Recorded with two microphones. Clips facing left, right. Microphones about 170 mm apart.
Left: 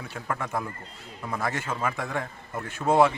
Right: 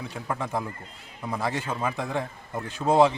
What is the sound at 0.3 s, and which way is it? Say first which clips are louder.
A man's voice: right 1 dB; 15° right (ahead or behind).